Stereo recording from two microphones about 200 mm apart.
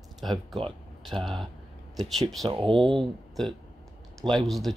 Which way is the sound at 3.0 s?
Centre (ahead or behind).